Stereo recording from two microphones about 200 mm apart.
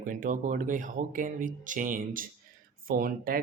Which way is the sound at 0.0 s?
40° right (ahead or behind).